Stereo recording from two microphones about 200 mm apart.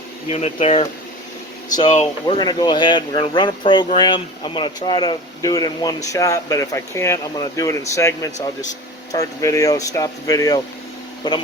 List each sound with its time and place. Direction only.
0.3 s speech: 30° left (ahead or behind)
1.9 s speech: 30° left (ahead or behind)